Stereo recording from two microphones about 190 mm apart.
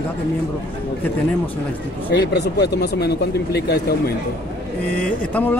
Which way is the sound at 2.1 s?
60° left (ahead or behind).